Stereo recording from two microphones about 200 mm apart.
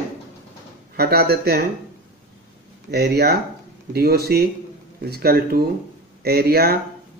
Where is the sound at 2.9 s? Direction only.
55° right (ahead or behind).